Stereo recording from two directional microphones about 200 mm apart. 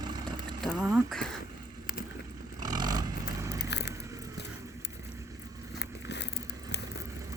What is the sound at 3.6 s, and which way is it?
Biting, 60° left (ahead or behind).